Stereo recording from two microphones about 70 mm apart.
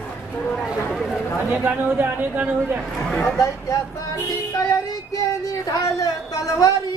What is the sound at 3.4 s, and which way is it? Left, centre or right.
Music, left.